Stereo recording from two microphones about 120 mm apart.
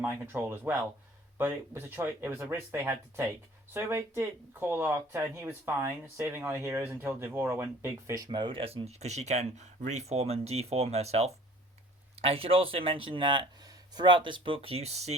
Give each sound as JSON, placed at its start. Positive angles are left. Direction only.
{"t": 0.0, "sound": "speech", "side_deg": -15}
{"t": 12.2, "sound": "speech", "side_deg": -50}